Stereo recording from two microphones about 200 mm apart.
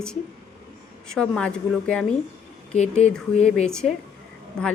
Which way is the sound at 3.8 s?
Centre (ahead or behind).